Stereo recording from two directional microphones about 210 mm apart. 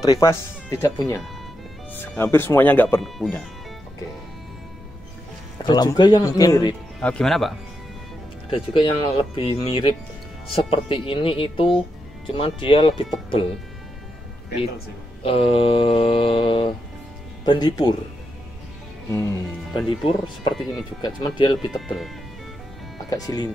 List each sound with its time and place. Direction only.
0.0 s speech: 15° left (ahead or behind)
5.7 s mantra: 20° left (ahead or behind)
7.0 s speech: 5° left (ahead or behind)
8.5 s mantra: 25° left (ahead or behind)
15.2 s mantra: 25° left (ahead or behind)
19.0 s speech: 15° left (ahead or behind)
20.1 s mantra: 25° left (ahead or behind)
21.7 s speech: centre (ahead or behind)
23.0 s speech: 15° left (ahead or behind)